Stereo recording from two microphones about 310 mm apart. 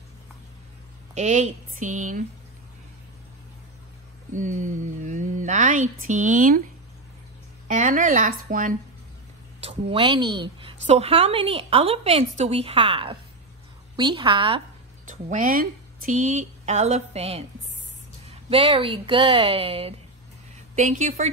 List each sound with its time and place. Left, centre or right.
1.1 s speech: right
4.3 s speech: right
7.6 s a woman's voice: right